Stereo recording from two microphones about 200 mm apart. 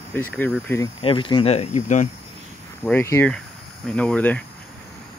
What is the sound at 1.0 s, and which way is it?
Speech, 25° left (ahead or behind).